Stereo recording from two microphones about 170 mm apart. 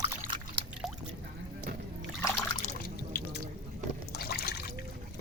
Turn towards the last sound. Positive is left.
turn(degrees=70)  # may be behind; listen again after turning